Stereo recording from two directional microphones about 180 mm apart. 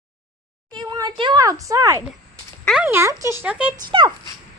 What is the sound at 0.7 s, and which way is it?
Speech, 25° right (ahead or behind).